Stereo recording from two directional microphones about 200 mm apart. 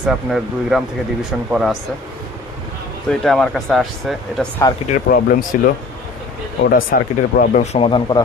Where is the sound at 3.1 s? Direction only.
Centre (ahead or behind).